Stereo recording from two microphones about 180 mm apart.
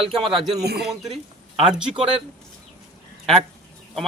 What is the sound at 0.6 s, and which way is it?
Speech, 65° right (ahead or behind).